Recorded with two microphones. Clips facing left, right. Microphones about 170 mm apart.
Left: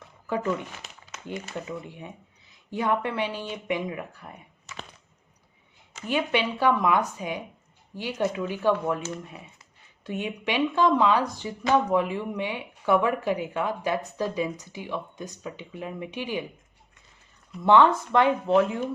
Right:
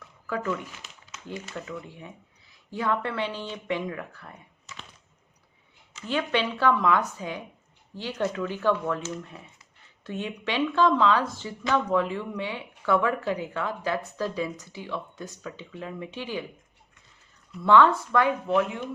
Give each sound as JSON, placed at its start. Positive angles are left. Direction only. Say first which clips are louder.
{"t": 0.0, "sound": "a sound", "louder": "left 3 dB", "side_deg": 25}
{"t": 1.5, "sound": "speech", "louder": "left 2 dB", "side_deg": 20}
{"t": 6.1, "sound": "speech", "louder": "left 1 dB", "side_deg": 15}
{"t": 17.6, "sound": "speech", "louder": "even", "side_deg": 20}